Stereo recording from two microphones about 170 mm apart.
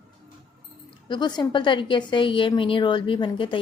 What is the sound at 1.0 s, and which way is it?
A woman's voice, 25° left (ahead or behind).